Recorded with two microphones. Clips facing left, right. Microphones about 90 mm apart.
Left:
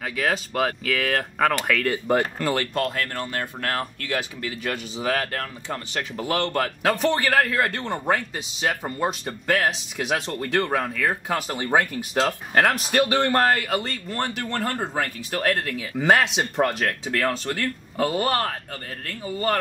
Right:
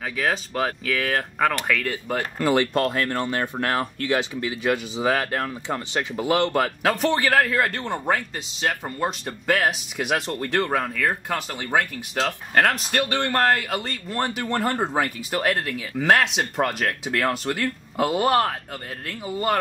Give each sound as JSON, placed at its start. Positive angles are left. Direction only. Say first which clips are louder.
{"t": 0.2, "sound": "a man's voice", "louder": "left 1 dB", "side_deg": 0}
{"t": 2.3, "sound": "speech", "louder": "right 4 dB", "side_deg": -15}
{"t": 2.7, "sound": "speech", "louder": "right 3 dB", "side_deg": -35}
{"t": 6.8, "sound": "a man's voice", "louder": "left 2 dB", "side_deg": 0}
{"t": 15.4, "sound": "a man's voice", "louder": "left 2 dB", "side_deg": -5}